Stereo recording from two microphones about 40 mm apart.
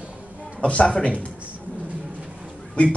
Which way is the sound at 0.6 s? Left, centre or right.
Left.